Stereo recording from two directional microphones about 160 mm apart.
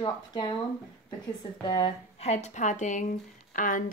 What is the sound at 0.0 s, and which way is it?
A woman's voice, 25° left (ahead or behind).